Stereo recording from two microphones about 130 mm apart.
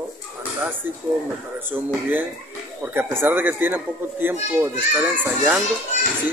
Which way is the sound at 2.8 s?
20° right (ahead or behind).